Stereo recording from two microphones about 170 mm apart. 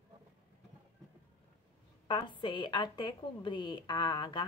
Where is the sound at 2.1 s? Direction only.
30° left (ahead or behind).